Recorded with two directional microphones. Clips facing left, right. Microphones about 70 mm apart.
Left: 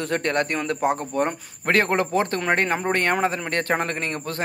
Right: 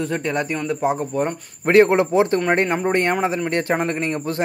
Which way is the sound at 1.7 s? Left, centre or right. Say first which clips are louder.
Right 6 dB; centre.